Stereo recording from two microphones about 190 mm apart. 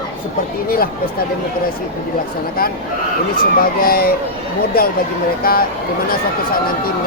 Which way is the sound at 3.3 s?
50° left (ahead or behind).